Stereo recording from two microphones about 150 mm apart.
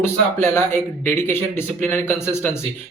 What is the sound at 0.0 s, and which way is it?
Speech, 15° left (ahead or behind).